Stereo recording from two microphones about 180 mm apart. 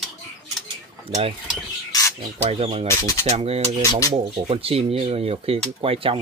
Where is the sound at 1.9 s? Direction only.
20° left (ahead or behind).